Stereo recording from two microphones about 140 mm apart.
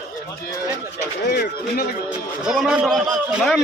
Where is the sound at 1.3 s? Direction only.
90° left.